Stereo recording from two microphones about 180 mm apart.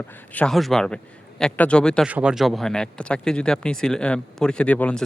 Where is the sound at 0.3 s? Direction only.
Centre (ahead or behind).